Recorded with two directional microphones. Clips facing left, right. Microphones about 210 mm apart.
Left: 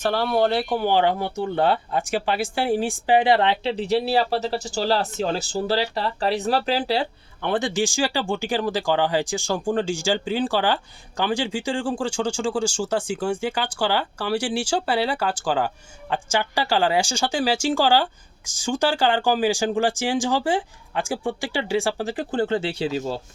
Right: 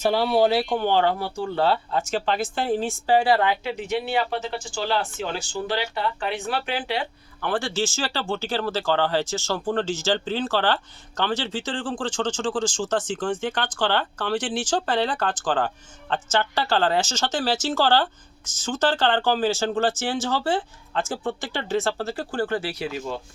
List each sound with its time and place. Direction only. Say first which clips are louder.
0.0 s speech: right 1 dB; 10° right (ahead or behind); by 7.5 s 30° left (ahead or behind)
7.5 s speech: left 3 dB; 15° left (ahead or behind)